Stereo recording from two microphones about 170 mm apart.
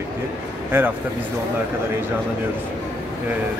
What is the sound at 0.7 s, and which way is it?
Speech, 10° right (ahead or behind).